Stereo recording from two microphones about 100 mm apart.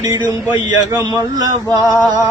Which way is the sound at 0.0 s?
40° right (ahead or behind).